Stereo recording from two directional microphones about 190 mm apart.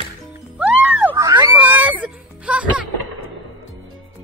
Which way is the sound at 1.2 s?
20° right (ahead or behind).